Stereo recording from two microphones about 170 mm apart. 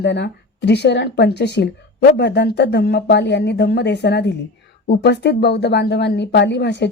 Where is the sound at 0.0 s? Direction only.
90° left.